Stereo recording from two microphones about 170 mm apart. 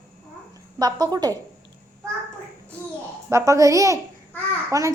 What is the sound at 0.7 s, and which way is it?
Speech, 25° right (ahead or behind).